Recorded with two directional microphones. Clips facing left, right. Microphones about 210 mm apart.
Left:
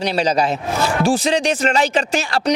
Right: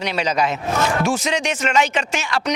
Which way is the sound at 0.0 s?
35° left (ahead or behind).